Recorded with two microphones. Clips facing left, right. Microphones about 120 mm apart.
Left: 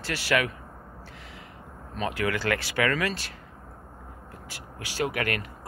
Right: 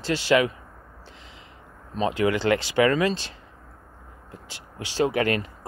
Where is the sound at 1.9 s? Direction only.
25° right (ahead or behind).